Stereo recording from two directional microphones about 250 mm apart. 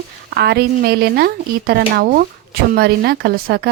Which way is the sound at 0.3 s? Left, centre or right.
Right.